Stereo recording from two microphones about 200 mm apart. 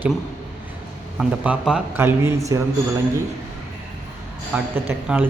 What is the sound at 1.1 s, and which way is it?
A man's voice, 5° right (ahead or behind).